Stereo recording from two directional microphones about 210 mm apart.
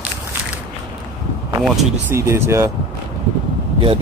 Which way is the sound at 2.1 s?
10° right (ahead or behind).